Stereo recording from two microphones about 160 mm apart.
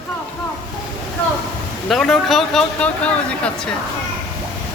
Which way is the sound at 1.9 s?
Centre (ahead or behind).